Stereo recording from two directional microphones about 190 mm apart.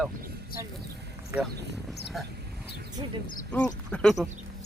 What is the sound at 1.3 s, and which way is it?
Speech, 10° right (ahead or behind).